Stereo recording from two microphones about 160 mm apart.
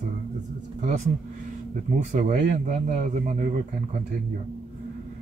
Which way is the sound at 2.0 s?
50° right (ahead or behind).